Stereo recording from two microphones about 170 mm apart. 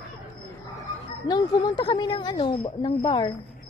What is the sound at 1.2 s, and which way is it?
A woman's voice, 25° left (ahead or behind).